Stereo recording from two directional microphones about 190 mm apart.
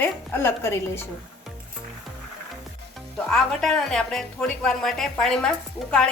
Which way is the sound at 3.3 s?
Centre (ahead or behind).